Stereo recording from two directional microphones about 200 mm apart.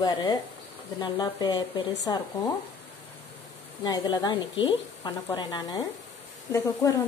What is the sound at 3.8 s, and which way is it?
A woman's voice, 20° left (ahead or behind).